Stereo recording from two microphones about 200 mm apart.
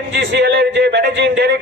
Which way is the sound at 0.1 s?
55° right (ahead or behind).